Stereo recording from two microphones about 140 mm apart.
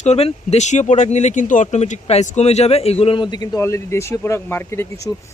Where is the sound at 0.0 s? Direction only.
50° left (ahead or behind); by 1.6 s 65° left (ahead or behind).